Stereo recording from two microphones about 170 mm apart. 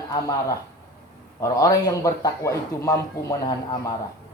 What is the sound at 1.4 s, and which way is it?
Speech, 20° left (ahead or behind).